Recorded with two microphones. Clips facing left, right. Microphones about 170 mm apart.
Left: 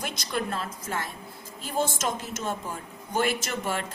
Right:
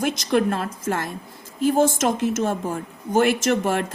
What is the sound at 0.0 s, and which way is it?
A woman's voice, 55° right (ahead or behind).